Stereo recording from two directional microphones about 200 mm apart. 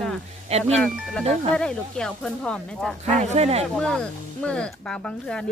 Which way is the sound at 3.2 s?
30° right (ahead or behind).